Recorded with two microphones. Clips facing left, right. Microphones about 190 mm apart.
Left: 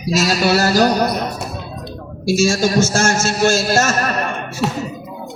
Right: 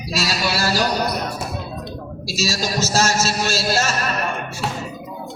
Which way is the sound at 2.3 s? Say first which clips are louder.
Left 9 dB; 50° left (ahead or behind).